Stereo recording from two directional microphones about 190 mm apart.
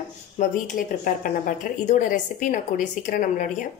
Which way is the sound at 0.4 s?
45° left (ahead or behind).